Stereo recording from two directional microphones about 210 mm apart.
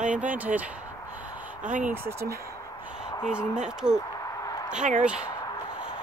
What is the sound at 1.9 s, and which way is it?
Speech, 10° right (ahead or behind).